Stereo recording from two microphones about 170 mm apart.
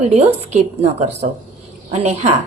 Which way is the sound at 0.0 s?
40° right (ahead or behind).